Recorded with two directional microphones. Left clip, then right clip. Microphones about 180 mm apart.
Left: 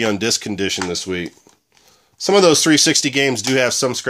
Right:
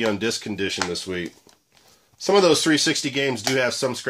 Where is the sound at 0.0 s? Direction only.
45° left (ahead or behind).